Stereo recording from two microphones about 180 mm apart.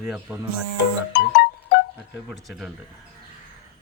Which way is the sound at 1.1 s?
70° left (ahead or behind).